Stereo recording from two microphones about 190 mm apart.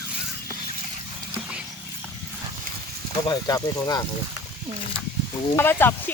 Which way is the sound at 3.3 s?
20° left (ahead or behind).